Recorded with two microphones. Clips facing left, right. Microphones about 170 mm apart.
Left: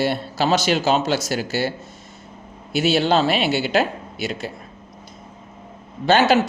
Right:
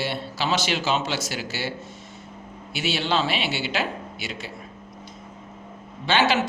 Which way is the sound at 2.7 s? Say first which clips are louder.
Left 7 dB; 40° left (ahead or behind).